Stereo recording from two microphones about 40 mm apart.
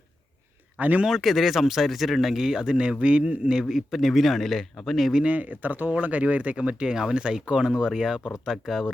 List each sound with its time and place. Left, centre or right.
0.8 s speech: right
1.0 s speech: centre; by 3.5 s right
3.5 s speech: centre
3.9 s a man's voice: centre
5.2 s speech: right
6.9 s speech: centre